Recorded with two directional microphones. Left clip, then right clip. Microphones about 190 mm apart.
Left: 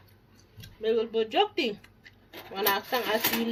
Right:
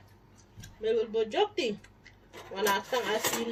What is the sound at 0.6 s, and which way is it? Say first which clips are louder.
Speech: left 2 dB; 40° left (ahead or behind).